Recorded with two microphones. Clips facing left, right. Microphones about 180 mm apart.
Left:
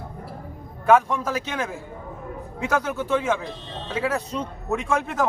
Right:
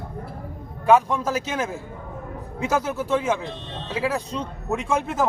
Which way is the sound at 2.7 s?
5° right (ahead or behind).